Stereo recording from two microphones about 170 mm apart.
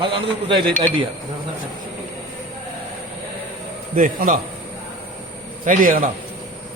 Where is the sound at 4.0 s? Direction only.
55° right (ahead or behind).